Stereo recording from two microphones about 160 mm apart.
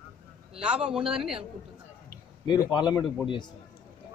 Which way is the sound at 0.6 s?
5° right (ahead or behind).